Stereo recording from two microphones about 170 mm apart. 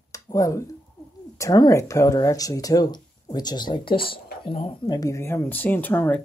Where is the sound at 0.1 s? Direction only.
20° left (ahead or behind).